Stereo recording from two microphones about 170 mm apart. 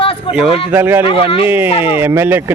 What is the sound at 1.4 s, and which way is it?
Speech, 10° right (ahead or behind).